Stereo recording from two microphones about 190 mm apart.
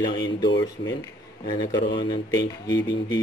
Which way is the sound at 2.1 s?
20° left (ahead or behind).